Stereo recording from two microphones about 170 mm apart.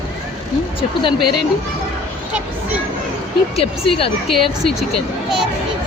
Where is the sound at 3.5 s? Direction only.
35° left (ahead or behind).